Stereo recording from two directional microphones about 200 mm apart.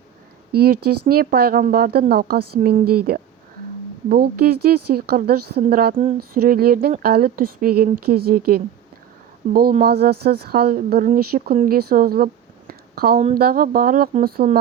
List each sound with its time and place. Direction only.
0.5 s speech: 50° right (ahead or behind)